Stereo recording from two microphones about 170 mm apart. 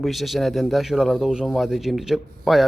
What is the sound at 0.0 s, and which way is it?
A man's voice, centre (ahead or behind).